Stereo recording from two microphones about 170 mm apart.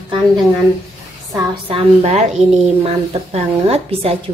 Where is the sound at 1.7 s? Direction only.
35° right (ahead or behind).